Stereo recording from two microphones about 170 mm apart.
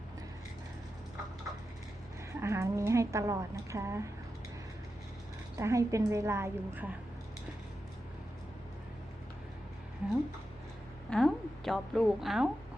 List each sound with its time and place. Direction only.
2.4 s a woman's voice: 15° right (ahead or behind)
5.5 s a woman's voice: 20° right (ahead or behind)
11.1 s a woman's voice: centre (ahead or behind)